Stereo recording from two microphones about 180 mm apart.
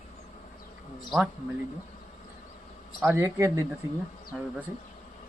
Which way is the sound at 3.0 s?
15° right (ahead or behind).